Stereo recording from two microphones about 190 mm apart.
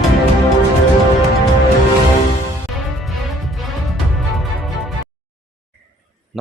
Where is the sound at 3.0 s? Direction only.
Centre (ahead or behind).